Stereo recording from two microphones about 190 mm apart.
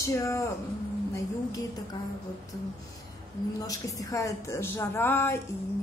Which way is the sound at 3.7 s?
15° left (ahead or behind).